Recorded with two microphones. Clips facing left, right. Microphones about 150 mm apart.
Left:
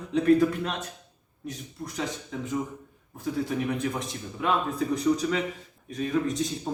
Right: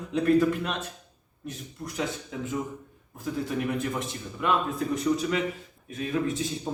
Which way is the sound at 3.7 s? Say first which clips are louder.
Even; centre (ahead or behind).